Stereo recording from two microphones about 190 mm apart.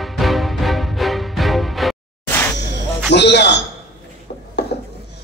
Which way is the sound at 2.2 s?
10° left (ahead or behind).